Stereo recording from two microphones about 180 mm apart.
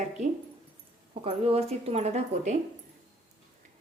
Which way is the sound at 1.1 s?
30° right (ahead or behind).